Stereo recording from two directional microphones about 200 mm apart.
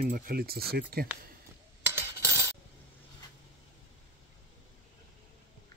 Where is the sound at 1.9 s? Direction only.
15° right (ahead or behind).